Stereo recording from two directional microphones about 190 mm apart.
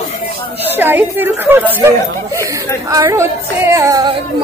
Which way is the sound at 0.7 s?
10° right (ahead or behind).